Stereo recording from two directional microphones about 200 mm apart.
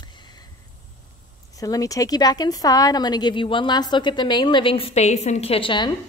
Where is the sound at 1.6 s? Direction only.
15° left (ahead or behind).